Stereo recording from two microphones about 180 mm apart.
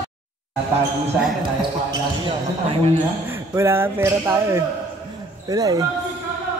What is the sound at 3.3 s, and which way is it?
Speech, 15° right (ahead or behind).